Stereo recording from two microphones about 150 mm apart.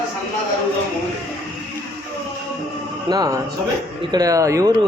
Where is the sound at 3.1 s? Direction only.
25° right (ahead or behind).